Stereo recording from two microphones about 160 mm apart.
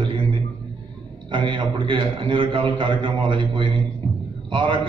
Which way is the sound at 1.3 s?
30° right (ahead or behind).